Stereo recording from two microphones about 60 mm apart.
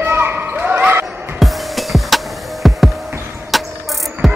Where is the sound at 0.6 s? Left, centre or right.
Right.